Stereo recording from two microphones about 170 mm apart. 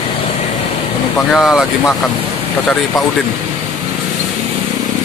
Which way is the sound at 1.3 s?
Centre (ahead or behind).